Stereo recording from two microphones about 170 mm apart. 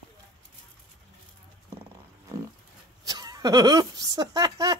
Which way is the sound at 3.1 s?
25° right (ahead or behind).